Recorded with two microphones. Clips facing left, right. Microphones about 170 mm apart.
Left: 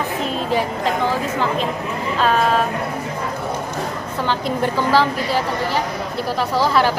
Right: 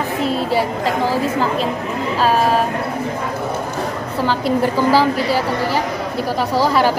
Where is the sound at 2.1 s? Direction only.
35° right (ahead or behind).